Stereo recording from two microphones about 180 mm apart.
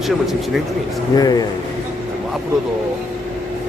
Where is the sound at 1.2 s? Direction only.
20° left (ahead or behind).